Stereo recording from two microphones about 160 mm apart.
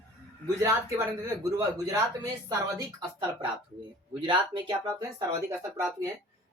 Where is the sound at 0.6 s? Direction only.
20° right (ahead or behind).